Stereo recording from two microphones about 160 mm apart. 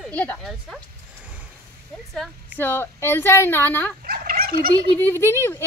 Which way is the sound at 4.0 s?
70° right (ahead or behind).